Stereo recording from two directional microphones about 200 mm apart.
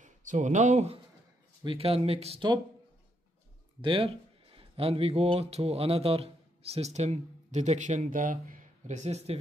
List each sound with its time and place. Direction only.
0.0 s speech: 40° right (ahead or behind)
3.8 s speech: 25° right (ahead or behind)